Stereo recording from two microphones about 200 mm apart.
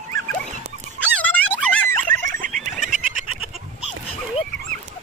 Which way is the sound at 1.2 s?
5° left (ahead or behind).